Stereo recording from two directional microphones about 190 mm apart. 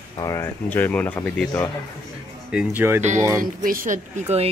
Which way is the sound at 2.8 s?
10° right (ahead or behind).